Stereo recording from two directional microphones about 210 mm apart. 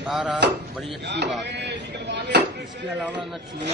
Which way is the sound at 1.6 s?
55° right (ahead or behind).